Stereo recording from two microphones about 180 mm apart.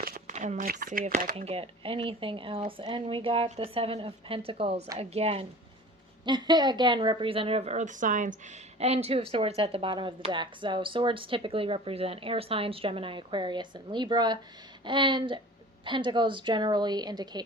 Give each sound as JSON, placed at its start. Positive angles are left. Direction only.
{"t": 0.0, "sound": "speech", "side_deg": -50}
{"t": 1.4, "sound": "speech", "side_deg": -35}